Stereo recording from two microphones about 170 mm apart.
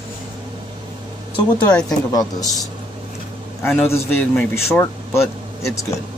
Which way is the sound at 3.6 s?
15° left (ahead or behind).